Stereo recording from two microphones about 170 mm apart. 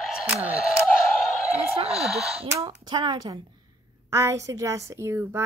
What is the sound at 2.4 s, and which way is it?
A woman's voice, 20° right (ahead or behind).